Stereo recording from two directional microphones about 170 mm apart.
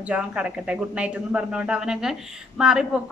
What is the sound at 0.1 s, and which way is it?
A man's voice, 5° right (ahead or behind).